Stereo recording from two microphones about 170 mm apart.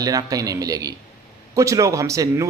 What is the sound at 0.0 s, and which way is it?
A man's voice, 20° right (ahead or behind).